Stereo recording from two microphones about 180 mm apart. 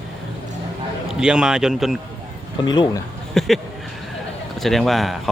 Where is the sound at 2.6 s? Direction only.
25° left (ahead or behind).